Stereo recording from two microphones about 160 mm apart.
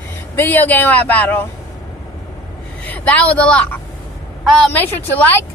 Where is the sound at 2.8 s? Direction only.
10° left (ahead or behind).